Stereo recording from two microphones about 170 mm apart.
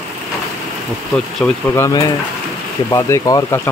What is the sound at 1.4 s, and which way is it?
Speech, 10° left (ahead or behind).